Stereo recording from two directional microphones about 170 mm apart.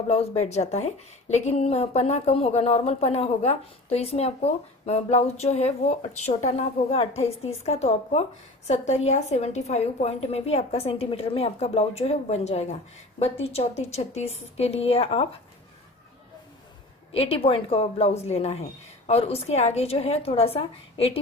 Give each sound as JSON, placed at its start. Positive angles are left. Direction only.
{"t": 0.1, "sound": "speech", "side_deg": 40}
{"t": 17.1, "sound": "speech", "side_deg": 35}